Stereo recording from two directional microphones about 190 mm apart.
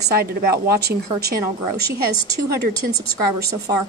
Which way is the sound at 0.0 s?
55° right (ahead or behind).